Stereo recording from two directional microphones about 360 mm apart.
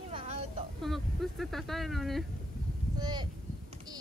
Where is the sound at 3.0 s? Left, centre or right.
Centre.